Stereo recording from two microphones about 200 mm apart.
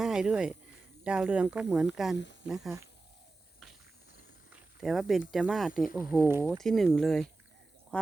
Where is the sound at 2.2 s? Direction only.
60° left (ahead or behind).